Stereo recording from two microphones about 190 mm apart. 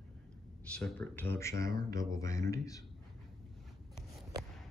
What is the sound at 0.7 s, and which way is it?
Speech, 5° left (ahead or behind).